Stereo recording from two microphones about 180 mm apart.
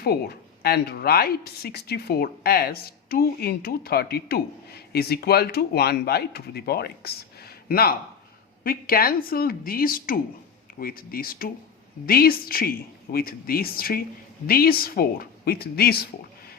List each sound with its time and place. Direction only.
0.0 s speech: 60° left (ahead or behind)